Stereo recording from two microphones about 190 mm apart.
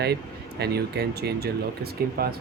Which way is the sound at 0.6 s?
60° right (ahead or behind).